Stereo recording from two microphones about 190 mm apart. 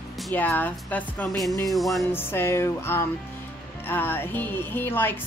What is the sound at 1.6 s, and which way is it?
Music, centre (ahead or behind).